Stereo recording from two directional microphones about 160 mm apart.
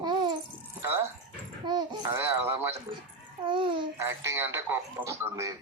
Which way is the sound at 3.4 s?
30° right (ahead or behind).